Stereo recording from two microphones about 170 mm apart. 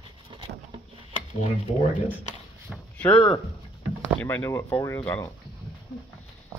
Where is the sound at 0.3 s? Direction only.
30° right (ahead or behind).